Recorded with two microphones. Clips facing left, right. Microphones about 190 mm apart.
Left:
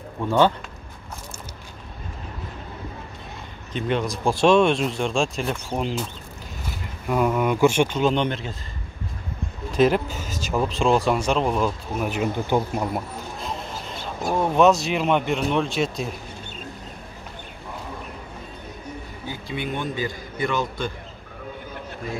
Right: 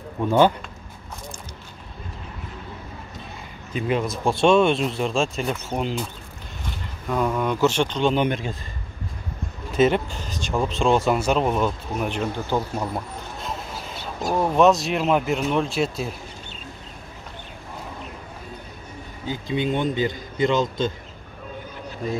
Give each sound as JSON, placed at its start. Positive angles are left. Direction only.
{"t": 3.7, "sound": "speech", "side_deg": -5}
{"t": 8.1, "sound": "speech", "side_deg": -10}
{"t": 9.8, "sound": "speech", "side_deg": 0}
{"t": 12.4, "sound": "speech", "side_deg": 15}
{"t": 13.4, "sound": "music", "side_deg": 0}
{"t": 14.4, "sound": "speech", "side_deg": 0}
{"t": 19.2, "sound": "a man's voice", "side_deg": -20}